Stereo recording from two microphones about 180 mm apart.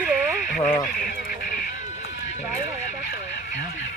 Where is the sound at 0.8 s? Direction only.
55° left (ahead or behind).